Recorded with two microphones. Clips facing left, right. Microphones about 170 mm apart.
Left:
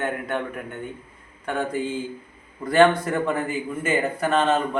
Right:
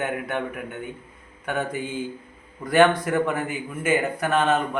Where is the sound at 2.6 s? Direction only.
Centre (ahead or behind).